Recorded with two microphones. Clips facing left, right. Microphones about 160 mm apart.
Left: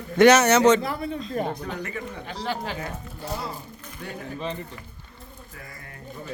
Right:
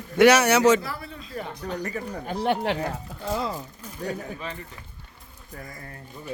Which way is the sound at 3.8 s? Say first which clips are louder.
Right 10 dB; 40° right (ahead or behind).